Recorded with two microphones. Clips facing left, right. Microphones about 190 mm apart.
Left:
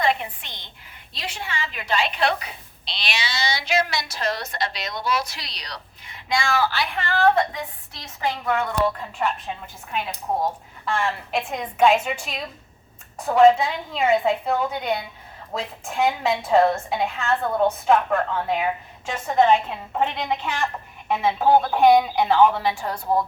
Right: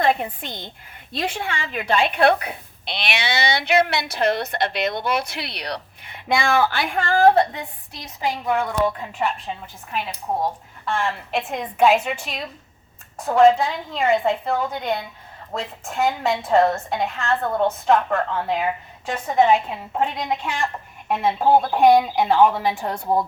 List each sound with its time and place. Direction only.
0.0 s a woman's voice: 45° right (ahead or behind)
7.9 s a woman's voice: 15° right (ahead or behind)
9.5 s a woman's voice: centre (ahead or behind)